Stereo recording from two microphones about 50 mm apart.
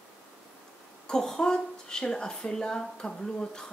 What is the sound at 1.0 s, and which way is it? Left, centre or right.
Speech, centre.